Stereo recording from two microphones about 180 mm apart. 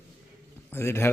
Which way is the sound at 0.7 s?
15° left (ahead or behind).